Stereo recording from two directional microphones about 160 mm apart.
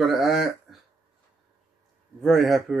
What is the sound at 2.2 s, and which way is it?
Speech, centre (ahead or behind).